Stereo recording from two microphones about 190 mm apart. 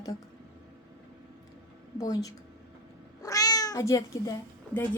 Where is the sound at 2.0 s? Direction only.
20° left (ahead or behind).